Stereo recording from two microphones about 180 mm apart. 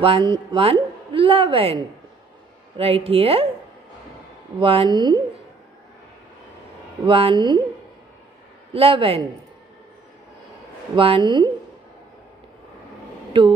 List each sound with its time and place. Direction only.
0.0 s speech: 30° right (ahead or behind)
2.8 s speech: 30° right (ahead or behind)
4.6 s speech: 30° right (ahead or behind)
7.1 s speech: 30° right (ahead or behind)
8.7 s speech: 30° right (ahead or behind)
11.0 s speech: 30° right (ahead or behind)
13.4 s speech: 25° right (ahead or behind)